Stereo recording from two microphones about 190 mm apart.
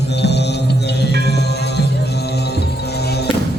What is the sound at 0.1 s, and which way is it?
Music, 60° left (ahead or behind).